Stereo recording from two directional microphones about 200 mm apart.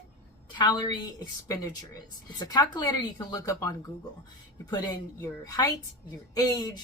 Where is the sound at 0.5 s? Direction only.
20° left (ahead or behind).